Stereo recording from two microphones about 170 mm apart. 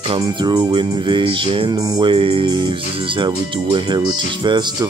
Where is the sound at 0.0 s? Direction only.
30° right (ahead or behind).